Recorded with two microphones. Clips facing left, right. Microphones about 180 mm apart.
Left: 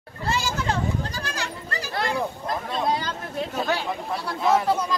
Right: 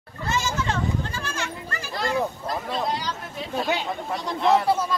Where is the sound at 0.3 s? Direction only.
35° left (ahead or behind).